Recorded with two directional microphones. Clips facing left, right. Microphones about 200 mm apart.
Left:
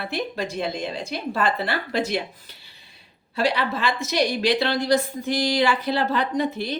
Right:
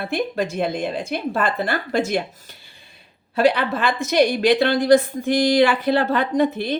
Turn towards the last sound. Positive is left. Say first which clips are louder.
# right 5 dB
turn(degrees=-55)  # may be behind; listen again after turning